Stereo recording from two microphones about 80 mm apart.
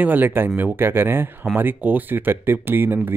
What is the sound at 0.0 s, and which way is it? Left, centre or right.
Speech, right.